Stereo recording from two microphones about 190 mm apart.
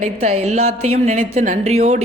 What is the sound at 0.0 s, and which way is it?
Speech, 35° right (ahead or behind).